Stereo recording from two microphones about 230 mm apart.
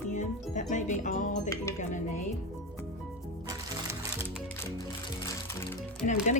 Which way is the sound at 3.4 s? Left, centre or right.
Centre.